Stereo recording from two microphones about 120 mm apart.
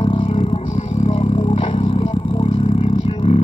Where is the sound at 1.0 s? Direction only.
50° left (ahead or behind).